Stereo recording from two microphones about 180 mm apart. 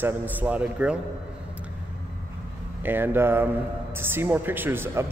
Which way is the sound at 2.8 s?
10° right (ahead or behind).